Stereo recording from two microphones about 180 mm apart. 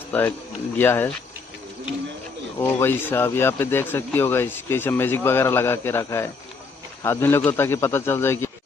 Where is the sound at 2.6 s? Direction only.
10° left (ahead or behind).